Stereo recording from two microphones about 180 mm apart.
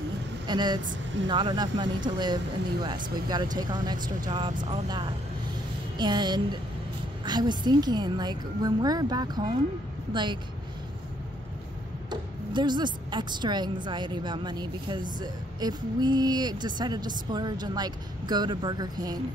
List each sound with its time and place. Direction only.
0.5 s speech: 25° right (ahead or behind)
12.1 s speech: 25° right (ahead or behind)